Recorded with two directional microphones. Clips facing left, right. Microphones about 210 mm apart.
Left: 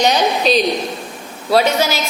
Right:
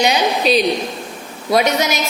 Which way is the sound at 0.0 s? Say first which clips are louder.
Left 1 dB; 10° right (ahead or behind).